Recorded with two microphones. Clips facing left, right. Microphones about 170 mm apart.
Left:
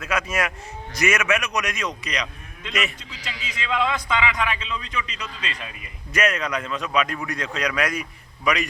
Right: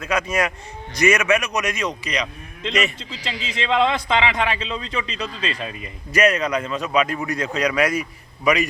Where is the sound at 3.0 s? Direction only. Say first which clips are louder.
Right 6 dB; 30° right (ahead or behind).